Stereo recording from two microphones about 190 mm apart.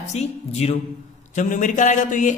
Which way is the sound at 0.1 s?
35° left (ahead or behind).